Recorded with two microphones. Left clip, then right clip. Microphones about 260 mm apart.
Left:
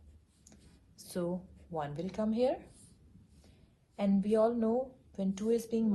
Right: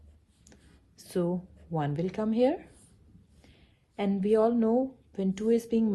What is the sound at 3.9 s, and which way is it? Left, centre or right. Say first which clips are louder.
A woman's voice: right 4 dB; right.